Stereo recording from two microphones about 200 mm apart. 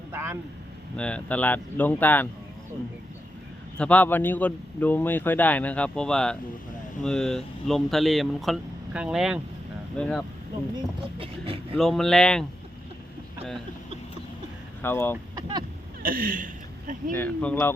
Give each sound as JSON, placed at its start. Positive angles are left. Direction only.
{"t": 0.1, "sound": "vehicle", "side_deg": -10}
{"t": 0.9, "sound": "speech", "side_deg": 5}
{"t": 3.8, "sound": "speech", "side_deg": 5}
{"t": 10.8, "sound": "speech", "side_deg": -25}
{"t": 11.8, "sound": "speech", "side_deg": 0}
{"t": 14.8, "sound": "speech", "side_deg": 10}
{"t": 15.4, "sound": "speech", "side_deg": -20}
{"t": 16.0, "sound": "speech", "side_deg": -45}
{"t": 17.2, "sound": "speech", "side_deg": 10}